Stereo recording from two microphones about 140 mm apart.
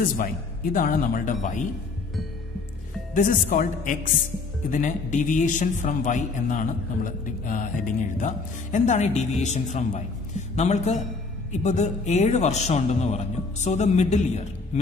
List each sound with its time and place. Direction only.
0.7 s speech: 80° left; by 1.7 s 65° left (ahead or behind)
3.2 s speech: 80° left
4.6 s a man's voice: 60° left (ahead or behind)